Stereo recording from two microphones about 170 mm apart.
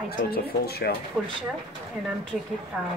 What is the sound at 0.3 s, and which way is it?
Speech, 65° left (ahead or behind).